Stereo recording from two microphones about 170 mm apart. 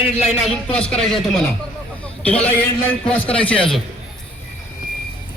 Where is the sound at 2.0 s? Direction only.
10° left (ahead or behind).